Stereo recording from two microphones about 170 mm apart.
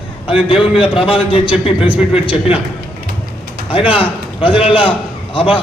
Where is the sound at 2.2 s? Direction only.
35° left (ahead or behind).